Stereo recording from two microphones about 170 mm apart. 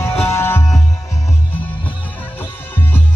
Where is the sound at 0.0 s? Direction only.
15° left (ahead or behind).